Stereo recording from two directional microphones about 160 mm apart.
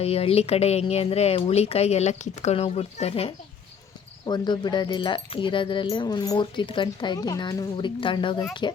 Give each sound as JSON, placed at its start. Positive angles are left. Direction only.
{"t": 0.0, "sound": "speech", "side_deg": 40}
{"t": 4.3, "sound": "speech", "side_deg": 25}